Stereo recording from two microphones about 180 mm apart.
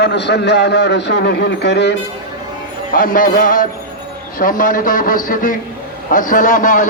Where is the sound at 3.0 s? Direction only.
50° left (ahead or behind).